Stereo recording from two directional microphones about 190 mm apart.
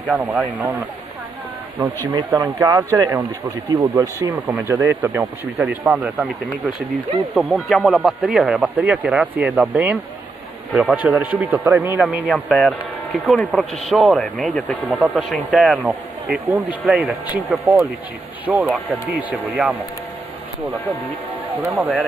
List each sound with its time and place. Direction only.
0.3 s speech: 5° right (ahead or behind)
1.8 s speech: 20° right (ahead or behind); by 6.3 s centre (ahead or behind)
7.3 s speech: centre (ahead or behind)
12.0 s speech: centre (ahead or behind)
21.7 s speech: 10° right (ahead or behind)